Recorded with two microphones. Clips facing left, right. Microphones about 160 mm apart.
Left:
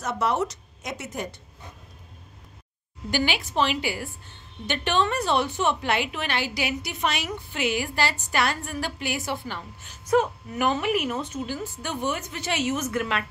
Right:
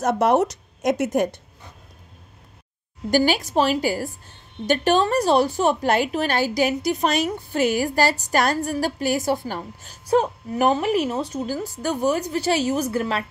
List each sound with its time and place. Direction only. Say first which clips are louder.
0.0 s a woman's voice: right 7 dB; 45° right (ahead or behind)
3.1 s a woman's voice: right 7 dB; 40° right (ahead or behind)